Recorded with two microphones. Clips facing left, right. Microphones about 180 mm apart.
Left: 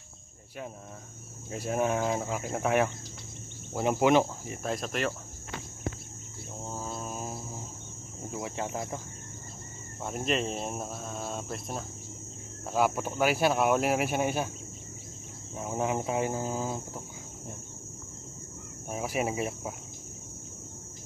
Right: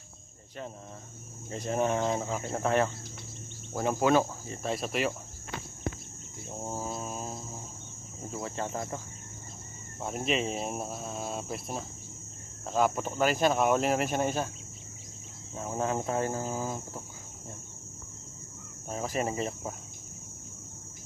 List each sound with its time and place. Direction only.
1.5 s cricket: 5° left (ahead or behind)
4.6 s speech: 5° right (ahead or behind)
6.6 s mantra: 15° right (ahead or behind)
6.9 s cricket: centre (ahead or behind)
8.3 s speech: 15° left (ahead or behind)
10.0 s speech: centre (ahead or behind)
12.6 s cricket: 5° left (ahead or behind)
15.5 s cricket: 10° left (ahead or behind)
18.9 s cricket: 10° left (ahead or behind)